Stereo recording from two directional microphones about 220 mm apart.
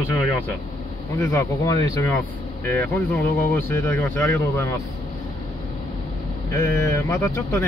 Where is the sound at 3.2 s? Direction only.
40° left (ahead or behind).